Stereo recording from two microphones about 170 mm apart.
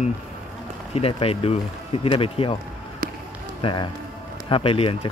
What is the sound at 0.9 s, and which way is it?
Speech, 35° left (ahead or behind).